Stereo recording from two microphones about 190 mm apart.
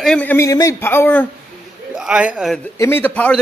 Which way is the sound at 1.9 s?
5° right (ahead or behind).